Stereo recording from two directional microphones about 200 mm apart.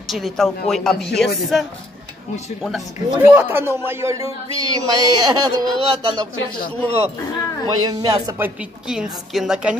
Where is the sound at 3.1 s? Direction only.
5° right (ahead or behind).